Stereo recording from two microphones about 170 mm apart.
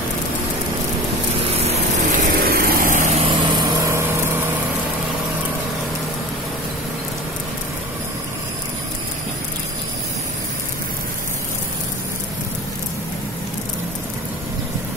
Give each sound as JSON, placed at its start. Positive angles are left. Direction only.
{"t": 1.7, "sound": "vehicle", "side_deg": -55}
{"t": 3.2, "sound": "vehicle", "side_deg": -30}